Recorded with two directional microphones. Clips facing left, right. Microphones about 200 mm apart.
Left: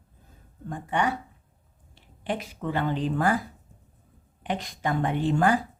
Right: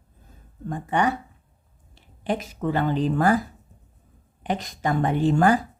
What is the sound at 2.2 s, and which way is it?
A woman's voice, 40° right (ahead or behind).